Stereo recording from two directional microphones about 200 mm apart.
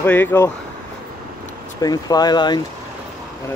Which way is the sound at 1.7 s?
20° left (ahead or behind).